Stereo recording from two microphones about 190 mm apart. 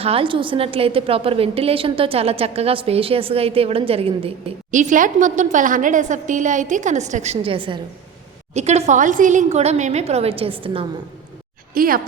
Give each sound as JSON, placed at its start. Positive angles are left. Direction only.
{"t": 0.0, "sound": "a woman's voice", "side_deg": -30}
{"t": 11.7, "sound": "a woman's voice", "side_deg": -50}